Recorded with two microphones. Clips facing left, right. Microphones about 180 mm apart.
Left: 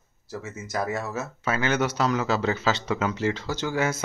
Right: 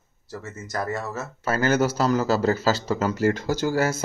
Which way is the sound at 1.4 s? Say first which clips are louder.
Right 4 dB; 40° right (ahead or behind).